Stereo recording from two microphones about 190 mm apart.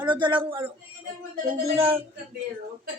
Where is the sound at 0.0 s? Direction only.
25° right (ahead or behind).